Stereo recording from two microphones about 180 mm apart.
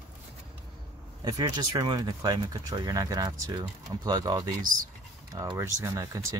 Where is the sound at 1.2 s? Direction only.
20° right (ahead or behind).